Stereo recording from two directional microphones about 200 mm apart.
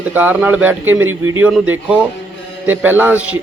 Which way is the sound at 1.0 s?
90° right.